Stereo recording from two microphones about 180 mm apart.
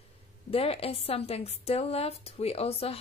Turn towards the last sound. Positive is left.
turn(degrees=35)  # may be behind; listen again after turning